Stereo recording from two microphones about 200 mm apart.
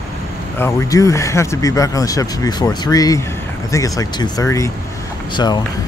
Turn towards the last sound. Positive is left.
turn(degrees=20)  # may be behind; listen again after turning